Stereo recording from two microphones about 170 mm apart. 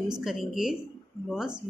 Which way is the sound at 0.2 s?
Centre (ahead or behind).